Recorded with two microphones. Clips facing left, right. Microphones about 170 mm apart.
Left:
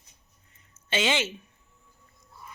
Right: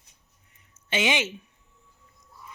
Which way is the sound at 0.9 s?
15° right (ahead or behind).